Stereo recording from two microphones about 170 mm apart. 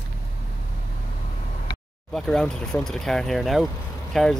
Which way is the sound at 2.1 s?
Centre (ahead or behind).